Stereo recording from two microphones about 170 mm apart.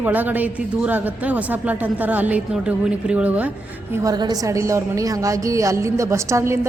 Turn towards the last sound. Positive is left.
turn(degrees=-15)  # may be behind; listen again after turning